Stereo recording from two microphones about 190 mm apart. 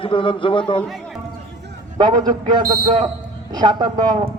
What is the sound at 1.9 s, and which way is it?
A man's voice, 20° right (ahead or behind).